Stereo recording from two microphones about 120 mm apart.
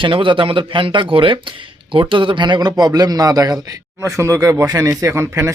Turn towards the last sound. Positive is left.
turn(degrees=-25)  # may be behind; listen again after turning